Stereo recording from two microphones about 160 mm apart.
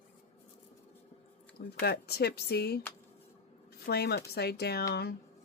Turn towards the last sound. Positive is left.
turn(degrees=85)